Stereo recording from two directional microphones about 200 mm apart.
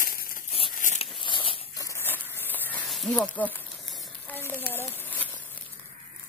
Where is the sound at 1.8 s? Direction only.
10° left (ahead or behind).